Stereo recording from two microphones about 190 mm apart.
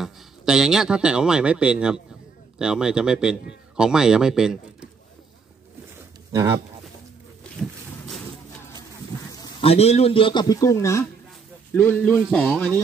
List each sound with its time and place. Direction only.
0.0 s a man's voice: centre (ahead or behind)
6.3 s speech: 15° right (ahead or behind)
9.3 s a sound: 20° left (ahead or behind)
9.7 s a man's voice: 35° left (ahead or behind); by 12.7 s 5° left (ahead or behind)